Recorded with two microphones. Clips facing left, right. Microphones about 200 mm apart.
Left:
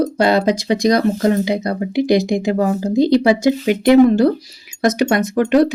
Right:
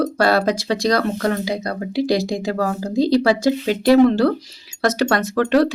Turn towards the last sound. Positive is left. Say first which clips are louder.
# left 3 dB
turn(degrees=20)  # may be behind; listen again after turning